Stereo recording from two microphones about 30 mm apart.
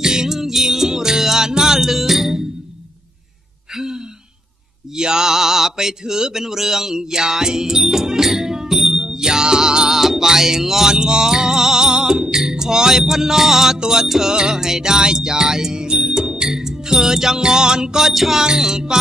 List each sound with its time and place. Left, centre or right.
0.0 s music: right
0.4 s music: centre
3.7 s a sound: centre
4.9 s mantra: right
7.0 s music: centre
8.9 s music: right
9.9 s music: centre
13.0 s mantra: centre
14.3 s music: right
18.1 s mantra: centre
18.6 s music: centre